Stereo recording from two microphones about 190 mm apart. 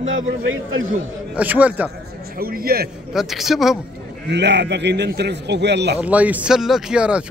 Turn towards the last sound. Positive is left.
turn(degrees=-5)  # may be behind; listen again after turning